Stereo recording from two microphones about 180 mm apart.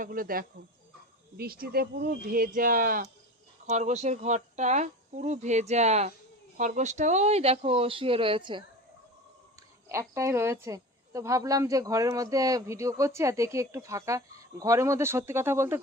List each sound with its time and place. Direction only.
0.0 s speech: 50° right (ahead or behind)
3.7 s speech: 40° right (ahead or behind)
9.9 s a woman's voice: 15° right (ahead or behind)